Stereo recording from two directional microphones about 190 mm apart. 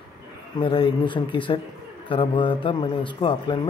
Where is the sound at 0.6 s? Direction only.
25° left (ahead or behind).